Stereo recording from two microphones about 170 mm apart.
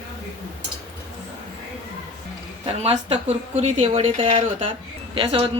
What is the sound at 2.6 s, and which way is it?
Speech, 35° right (ahead or behind).